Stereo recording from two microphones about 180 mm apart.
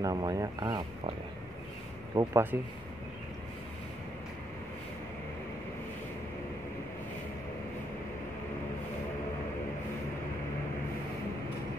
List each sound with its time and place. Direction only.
0.0 s speech: 20° right (ahead or behind)
2.1 s speech: 25° right (ahead or behind)
2.5 s speech: 15° right (ahead or behind)